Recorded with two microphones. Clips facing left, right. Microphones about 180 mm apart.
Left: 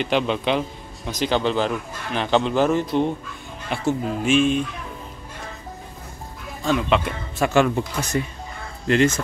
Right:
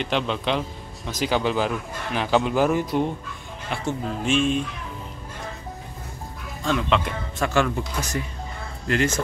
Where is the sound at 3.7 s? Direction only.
5° left (ahead or behind).